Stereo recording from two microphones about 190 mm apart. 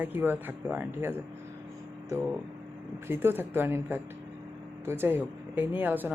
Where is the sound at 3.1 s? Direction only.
10° right (ahead or behind).